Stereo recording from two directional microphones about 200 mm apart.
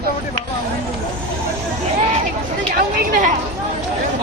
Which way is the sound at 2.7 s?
45° right (ahead or behind).